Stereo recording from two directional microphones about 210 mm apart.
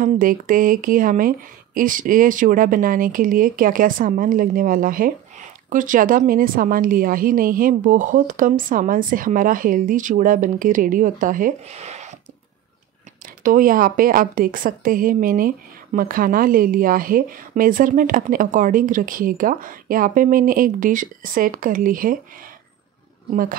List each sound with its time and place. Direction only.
0.0 s speech: 40° right (ahead or behind)
13.4 s speech: 40° right (ahead or behind)